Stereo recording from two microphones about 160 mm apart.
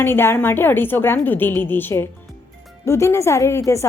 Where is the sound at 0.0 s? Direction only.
15° left (ahead or behind).